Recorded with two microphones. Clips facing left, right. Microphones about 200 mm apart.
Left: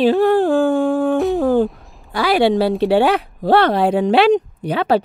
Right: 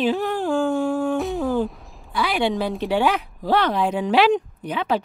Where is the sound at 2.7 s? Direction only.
30° left (ahead or behind).